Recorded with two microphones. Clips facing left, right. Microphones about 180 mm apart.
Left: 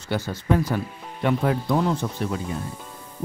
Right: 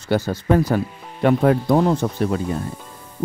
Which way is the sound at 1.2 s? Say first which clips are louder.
Right 6 dB; 50° right (ahead or behind).